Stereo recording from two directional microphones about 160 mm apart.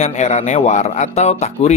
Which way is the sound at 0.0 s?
45° left (ahead or behind).